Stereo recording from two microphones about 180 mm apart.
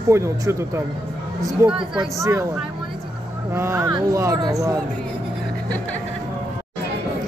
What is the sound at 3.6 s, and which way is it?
Speech, 15° right (ahead or behind).